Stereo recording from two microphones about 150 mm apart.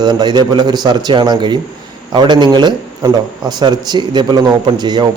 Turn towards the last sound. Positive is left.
turn(degrees=-30)  # may be behind; listen again after turning